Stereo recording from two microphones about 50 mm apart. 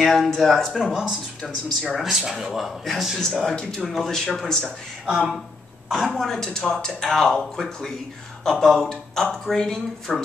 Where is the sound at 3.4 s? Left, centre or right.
Centre.